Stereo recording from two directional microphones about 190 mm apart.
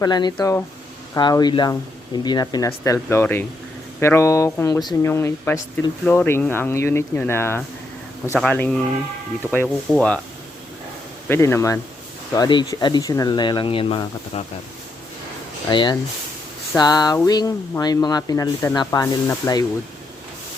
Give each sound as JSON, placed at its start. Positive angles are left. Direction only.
{"t": 0.0, "sound": "speech", "side_deg": 20}
{"t": 11.3, "sound": "speech", "side_deg": 15}
{"t": 15.7, "sound": "speech", "side_deg": 25}